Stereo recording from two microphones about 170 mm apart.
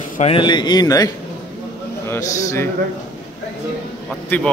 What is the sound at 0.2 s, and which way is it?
A man's voice, 30° left (ahead or behind).